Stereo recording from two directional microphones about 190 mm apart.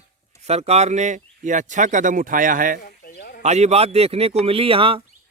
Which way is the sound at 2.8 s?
55° left (ahead or behind).